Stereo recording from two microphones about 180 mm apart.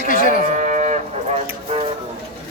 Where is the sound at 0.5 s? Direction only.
40° right (ahead or behind).